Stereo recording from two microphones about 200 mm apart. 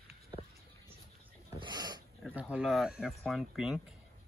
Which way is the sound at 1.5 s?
20° right (ahead or behind).